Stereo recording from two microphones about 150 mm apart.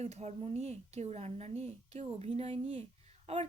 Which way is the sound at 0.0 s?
45° right (ahead or behind).